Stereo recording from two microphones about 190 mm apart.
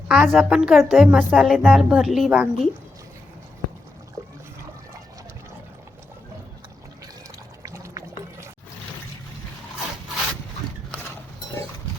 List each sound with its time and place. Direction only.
0.1 s a woman's voice: centre (ahead or behind)
7.6 s pour: 15° right (ahead or behind)